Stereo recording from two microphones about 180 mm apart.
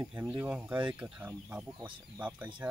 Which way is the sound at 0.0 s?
10° right (ahead or behind).